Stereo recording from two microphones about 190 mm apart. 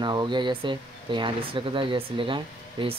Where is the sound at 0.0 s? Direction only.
25° right (ahead or behind).